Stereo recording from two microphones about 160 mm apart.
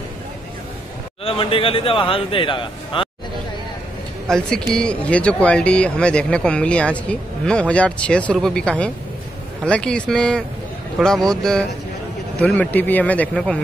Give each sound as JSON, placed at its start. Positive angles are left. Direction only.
{"t": 1.2, "sound": "speech", "side_deg": 35}
{"t": 4.3, "sound": "speech", "side_deg": 5}